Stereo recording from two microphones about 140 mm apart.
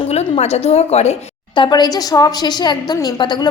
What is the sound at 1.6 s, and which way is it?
A woman's voice, 30° left (ahead or behind).